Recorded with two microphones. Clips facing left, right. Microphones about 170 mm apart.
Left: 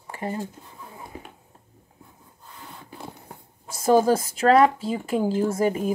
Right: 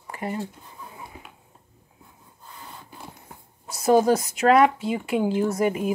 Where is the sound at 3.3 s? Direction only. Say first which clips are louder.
Even; 50° left (ahead or behind).